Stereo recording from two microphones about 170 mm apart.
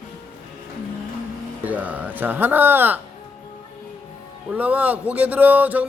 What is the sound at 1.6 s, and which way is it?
Speech, 10° right (ahead or behind).